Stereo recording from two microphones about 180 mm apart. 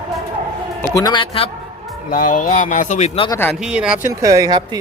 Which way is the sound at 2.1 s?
50° left (ahead or behind).